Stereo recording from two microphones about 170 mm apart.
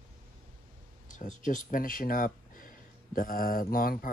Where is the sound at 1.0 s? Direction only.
50° left (ahead or behind).